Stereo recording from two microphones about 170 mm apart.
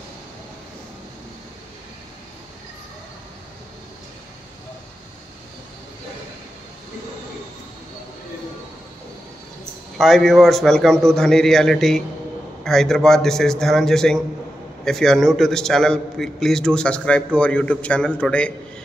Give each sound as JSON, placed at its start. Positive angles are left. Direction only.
{"t": 9.9, "sound": "a man's voice", "side_deg": 0}